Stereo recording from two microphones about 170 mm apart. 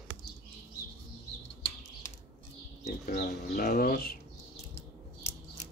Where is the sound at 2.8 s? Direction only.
45° left (ahead or behind).